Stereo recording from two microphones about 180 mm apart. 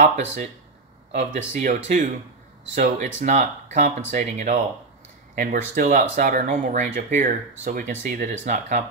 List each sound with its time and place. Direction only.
0.0 s speech: 45° right (ahead or behind)